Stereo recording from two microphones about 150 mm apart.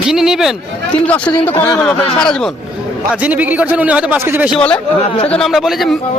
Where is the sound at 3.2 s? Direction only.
10° right (ahead or behind).